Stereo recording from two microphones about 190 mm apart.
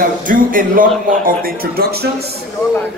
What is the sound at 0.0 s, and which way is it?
Speech, 45° right (ahead or behind).